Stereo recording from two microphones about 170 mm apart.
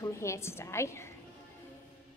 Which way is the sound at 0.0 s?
15° left (ahead or behind).